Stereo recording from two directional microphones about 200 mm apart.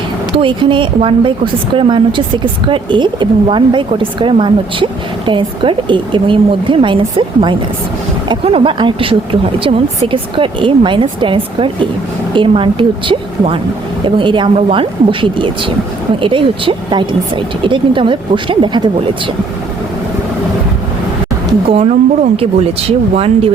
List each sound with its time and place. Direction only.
0.3 s speech: 25° right (ahead or behind)
21.7 s speech: 30° right (ahead or behind)